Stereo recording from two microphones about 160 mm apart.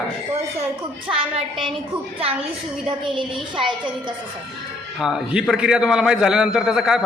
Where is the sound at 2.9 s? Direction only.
30° right (ahead or behind).